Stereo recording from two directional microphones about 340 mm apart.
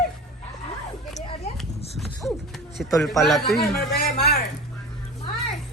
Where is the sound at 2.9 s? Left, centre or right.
Centre.